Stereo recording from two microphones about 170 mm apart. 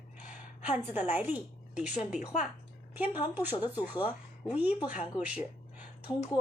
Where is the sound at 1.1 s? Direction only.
10° right (ahead or behind).